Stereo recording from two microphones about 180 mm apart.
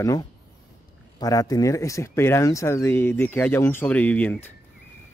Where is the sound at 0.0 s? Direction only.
15° left (ahead or behind).